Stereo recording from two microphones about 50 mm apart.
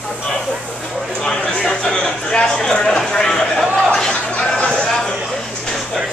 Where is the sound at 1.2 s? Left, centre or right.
Centre.